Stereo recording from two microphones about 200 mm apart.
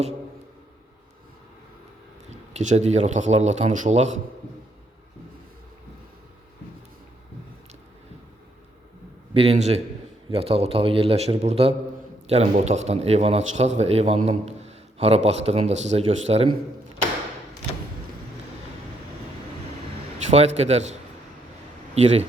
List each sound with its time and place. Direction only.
2.3 s speech: 35° right (ahead or behind)
9.3 s a man's voice: 30° right (ahead or behind)
20.1 s a man's voice: 35° right (ahead or behind)
21.9 s speech: 35° right (ahead or behind)